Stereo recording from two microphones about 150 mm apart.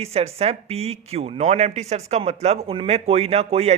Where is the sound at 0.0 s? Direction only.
45° right (ahead or behind).